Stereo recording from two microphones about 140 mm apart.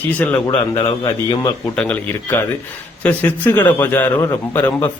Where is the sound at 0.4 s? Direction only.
30° left (ahead or behind).